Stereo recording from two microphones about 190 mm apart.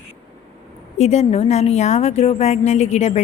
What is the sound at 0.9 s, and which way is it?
A woman's voice, 35° left (ahead or behind).